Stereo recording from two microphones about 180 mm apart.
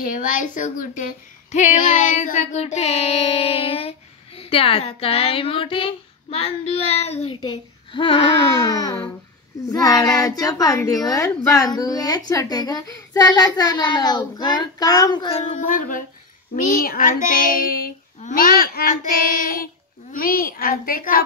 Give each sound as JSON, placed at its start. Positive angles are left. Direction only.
{"t": 0.0, "sound": "child singing", "side_deg": 45}
{"t": 4.4, "sound": "a woman's voice", "side_deg": 30}
{"t": 7.9, "sound": "a sound", "side_deg": 30}
{"t": 8.6, "sound": "speech", "side_deg": 20}
{"t": 16.5, "sound": "child singing", "side_deg": 50}